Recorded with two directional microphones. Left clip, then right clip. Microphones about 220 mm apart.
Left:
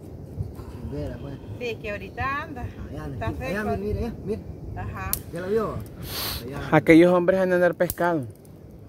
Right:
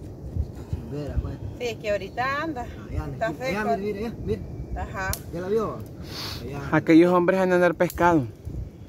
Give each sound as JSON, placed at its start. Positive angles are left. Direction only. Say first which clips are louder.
{"t": 1.7, "sound": "speech", "louder": "right 6 dB", "side_deg": -40}
{"t": 3.4, "sound": "speech", "louder": "even", "side_deg": 0}
{"t": 4.7, "sound": "speech", "louder": "right 4 dB", "side_deg": -40}
{"t": 5.4, "sound": "speech", "louder": "even", "side_deg": 0}
{"t": 6.1, "sound": "speech", "louder": "left 3 dB", "side_deg": 25}
{"t": 7.1, "sound": "speech", "louder": "even", "side_deg": 5}